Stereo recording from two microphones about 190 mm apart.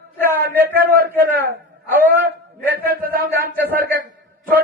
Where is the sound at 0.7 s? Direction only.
55° right (ahead or behind).